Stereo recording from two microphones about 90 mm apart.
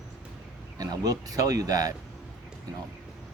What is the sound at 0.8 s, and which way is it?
Speech, 45° right (ahead or behind).